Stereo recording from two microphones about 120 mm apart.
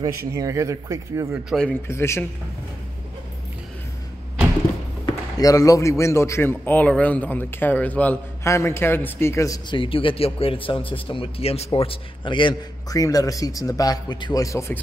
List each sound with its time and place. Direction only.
0.3 s speech: 25° right (ahead or behind)
1.7 s a man's voice: 20° left (ahead or behind)
5.0 s a man's voice: 30° left (ahead or behind); by 8.2 s 15° left (ahead or behind)
8.5 s a man's voice: 25° left (ahead or behind)
9.7 s a man's voice: 45° left (ahead or behind)
12.9 s a man's voice: 30° left (ahead or behind)